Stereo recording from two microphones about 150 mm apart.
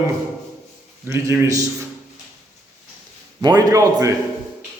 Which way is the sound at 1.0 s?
15° right (ahead or behind).